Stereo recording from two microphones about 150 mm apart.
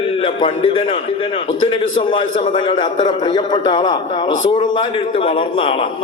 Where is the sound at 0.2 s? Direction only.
35° left (ahead or behind).